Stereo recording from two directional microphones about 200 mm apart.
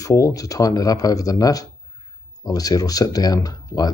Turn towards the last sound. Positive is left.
turn(degrees=20)  # may be behind; listen again after turning